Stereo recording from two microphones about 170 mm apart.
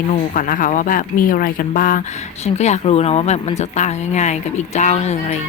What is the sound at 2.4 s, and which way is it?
Speech, 40° left (ahead or behind).